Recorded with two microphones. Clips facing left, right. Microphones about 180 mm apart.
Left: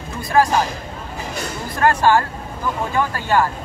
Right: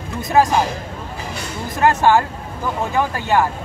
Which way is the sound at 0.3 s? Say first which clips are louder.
Right 1 dB; 15° right (ahead or behind).